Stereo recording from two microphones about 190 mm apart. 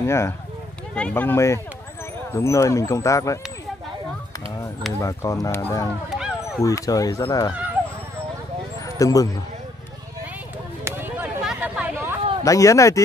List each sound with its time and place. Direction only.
0.0 s speech: 15° left (ahead or behind)
5.0 s speech: 15° left (ahead or behind)
6.0 s a sound: centre (ahead or behind)
6.6 s speech: 15° left (ahead or behind)
8.8 s speech: 15° left (ahead or behind)
10.8 s a sound: 10° right (ahead or behind)
12.4 s speech: 15° left (ahead or behind)